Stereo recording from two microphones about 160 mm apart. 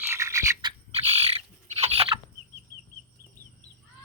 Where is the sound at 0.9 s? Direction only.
40° right (ahead or behind).